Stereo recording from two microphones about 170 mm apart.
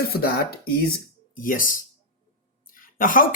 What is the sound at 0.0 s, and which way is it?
Speech, 65° left (ahead or behind).